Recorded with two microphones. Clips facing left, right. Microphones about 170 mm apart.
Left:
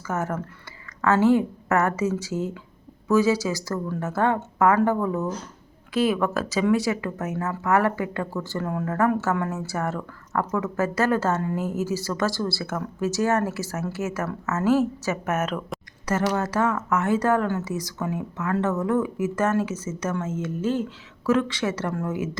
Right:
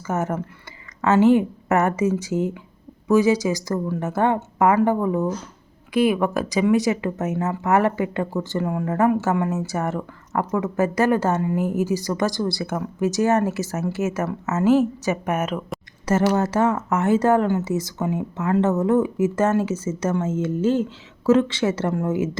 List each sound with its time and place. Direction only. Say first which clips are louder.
0.1 s speech: right 3 dB; 20° right (ahead or behind)
16.3 s speech: right 4 dB; 25° right (ahead or behind)